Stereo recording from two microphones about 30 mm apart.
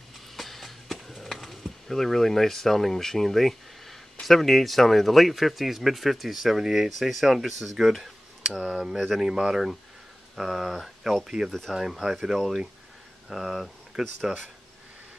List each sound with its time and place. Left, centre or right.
0.4 s music: centre
1.2 s speech: centre
10.3 s speech: centre